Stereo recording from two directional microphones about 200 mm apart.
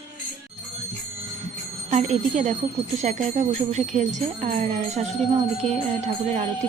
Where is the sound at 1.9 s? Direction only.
35° right (ahead or behind).